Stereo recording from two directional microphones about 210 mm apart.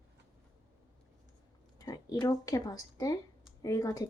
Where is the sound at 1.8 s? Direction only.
20° left (ahead or behind).